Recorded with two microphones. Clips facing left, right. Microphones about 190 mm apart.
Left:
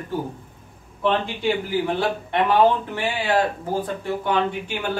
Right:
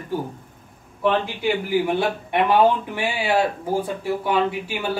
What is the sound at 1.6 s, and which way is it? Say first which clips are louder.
Speech: right 2 dB; 15° right (ahead or behind).